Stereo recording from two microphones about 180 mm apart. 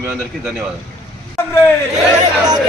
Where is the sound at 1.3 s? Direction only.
15° left (ahead or behind).